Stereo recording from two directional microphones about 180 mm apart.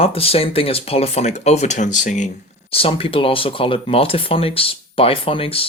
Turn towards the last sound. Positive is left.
turn(degrees=30)  # may be behind; listen again after turning